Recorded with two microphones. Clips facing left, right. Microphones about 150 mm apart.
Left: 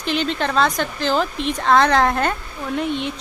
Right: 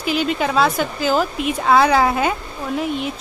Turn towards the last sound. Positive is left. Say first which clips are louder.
# right 1 dB
turn(degrees=-5)  # may be behind; listen again after turning